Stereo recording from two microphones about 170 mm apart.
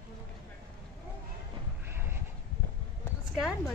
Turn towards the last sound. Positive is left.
turn(degrees=0)  # may be behind; listen again after turning